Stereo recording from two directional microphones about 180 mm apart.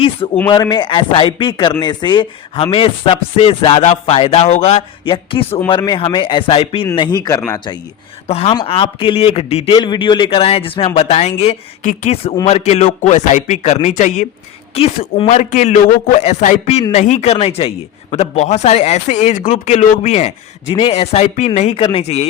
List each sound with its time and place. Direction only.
0.5 s speech: 25° left (ahead or behind)
1.8 s chopping: 25° left (ahead or behind)
5.6 s speech: 25° left (ahead or behind)
8.3 s chopping: 35° left (ahead or behind)